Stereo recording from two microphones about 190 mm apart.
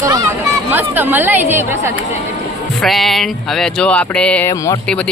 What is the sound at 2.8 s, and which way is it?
Speech, centre (ahead or behind).